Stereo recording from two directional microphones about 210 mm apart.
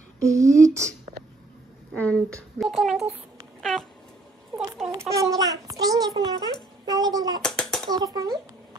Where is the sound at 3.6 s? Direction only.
Centre (ahead or behind).